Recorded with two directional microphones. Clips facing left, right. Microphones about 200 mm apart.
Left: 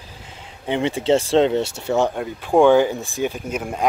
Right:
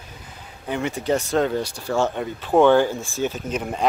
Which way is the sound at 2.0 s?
10° left (ahead or behind).